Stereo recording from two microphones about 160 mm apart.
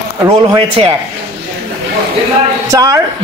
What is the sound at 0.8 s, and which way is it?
Speech, 35° right (ahead or behind).